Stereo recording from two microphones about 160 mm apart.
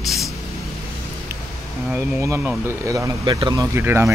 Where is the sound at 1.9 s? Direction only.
15° right (ahead or behind).